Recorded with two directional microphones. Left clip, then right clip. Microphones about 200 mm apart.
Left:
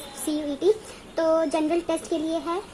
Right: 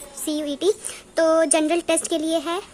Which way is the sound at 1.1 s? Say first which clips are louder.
Right 4 dB; 30° right (ahead or behind).